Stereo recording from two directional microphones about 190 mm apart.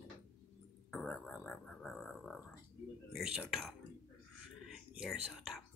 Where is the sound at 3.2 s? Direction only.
5° right (ahead or behind).